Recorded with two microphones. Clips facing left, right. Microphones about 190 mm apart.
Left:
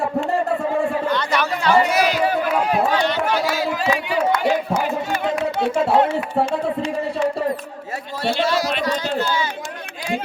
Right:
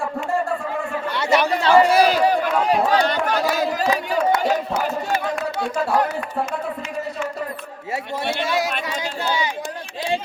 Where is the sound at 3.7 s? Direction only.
40° right (ahead or behind).